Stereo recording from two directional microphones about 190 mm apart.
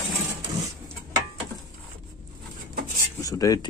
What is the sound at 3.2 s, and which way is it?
Cutlery, 20° left (ahead or behind).